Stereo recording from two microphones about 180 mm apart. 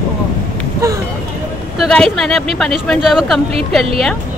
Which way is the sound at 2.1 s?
Centre (ahead or behind).